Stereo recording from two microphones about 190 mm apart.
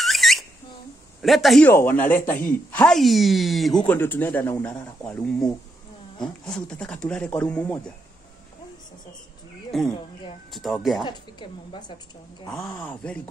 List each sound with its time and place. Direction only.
0.0 s a sound: centre (ahead or behind)
1.2 s speech: centre (ahead or behind)
1.7 s speech: 10° left (ahead or behind)
9.7 s speech: centre (ahead or behind)
11.1 s a woman's voice: 25° left (ahead or behind)
12.4 s speech: 5° left (ahead or behind)